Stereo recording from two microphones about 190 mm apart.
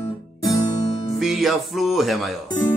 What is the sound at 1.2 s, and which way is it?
Music, centre (ahead or behind).